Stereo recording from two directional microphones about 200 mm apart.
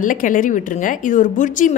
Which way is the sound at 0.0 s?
40° left (ahead or behind).